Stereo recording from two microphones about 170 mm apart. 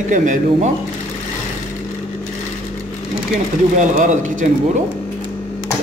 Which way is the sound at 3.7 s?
45° right (ahead or behind).